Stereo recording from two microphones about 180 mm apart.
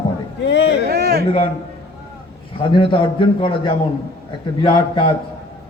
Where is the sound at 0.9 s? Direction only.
60° right (ahead or behind).